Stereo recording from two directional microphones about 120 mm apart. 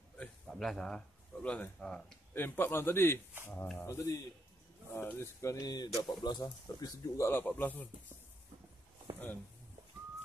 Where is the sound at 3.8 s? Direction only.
25° left (ahead or behind).